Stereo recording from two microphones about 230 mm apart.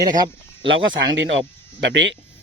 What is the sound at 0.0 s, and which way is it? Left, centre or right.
Speech, centre.